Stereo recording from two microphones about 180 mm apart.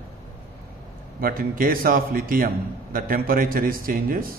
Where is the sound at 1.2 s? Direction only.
55° right (ahead or behind).